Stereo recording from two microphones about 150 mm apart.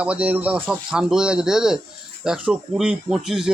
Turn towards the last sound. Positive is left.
turn(degrees=-5)  # may be behind; listen again after turning